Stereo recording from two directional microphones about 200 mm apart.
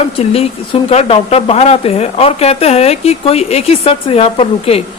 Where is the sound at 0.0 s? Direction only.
30° left (ahead or behind).